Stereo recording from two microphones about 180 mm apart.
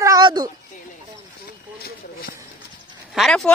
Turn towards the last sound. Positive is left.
turn(degrees=0)  # may be behind; listen again after turning